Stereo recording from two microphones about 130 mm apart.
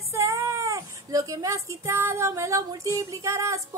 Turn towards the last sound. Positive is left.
turn(degrees=-25)  # may be behind; listen again after turning